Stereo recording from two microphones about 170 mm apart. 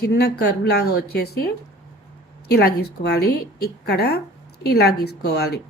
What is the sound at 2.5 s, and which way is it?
A woman's voice, 70° left (ahead or behind).